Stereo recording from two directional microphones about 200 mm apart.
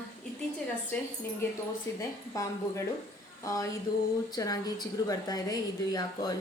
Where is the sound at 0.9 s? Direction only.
10° left (ahead or behind).